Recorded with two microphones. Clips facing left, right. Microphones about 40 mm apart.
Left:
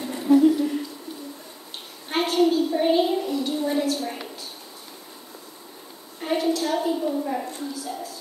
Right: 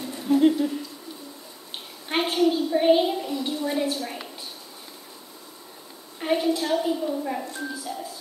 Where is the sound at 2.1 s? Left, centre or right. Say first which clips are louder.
Left 1 dB; right.